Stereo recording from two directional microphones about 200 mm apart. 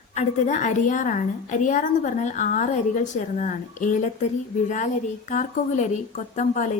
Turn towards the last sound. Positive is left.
turn(degrees=35)  # may be behind; listen again after turning